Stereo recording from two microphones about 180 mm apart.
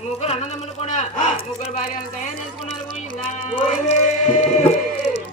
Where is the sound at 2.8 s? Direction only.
30° left (ahead or behind).